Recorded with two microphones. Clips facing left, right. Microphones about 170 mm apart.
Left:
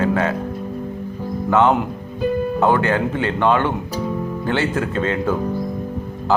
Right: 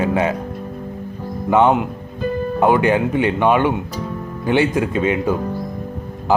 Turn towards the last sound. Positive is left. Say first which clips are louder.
# right 1 dB
turn(degrees=-15)  # may be behind; listen again after turning